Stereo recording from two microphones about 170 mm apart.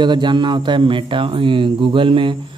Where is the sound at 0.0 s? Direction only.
25° right (ahead or behind).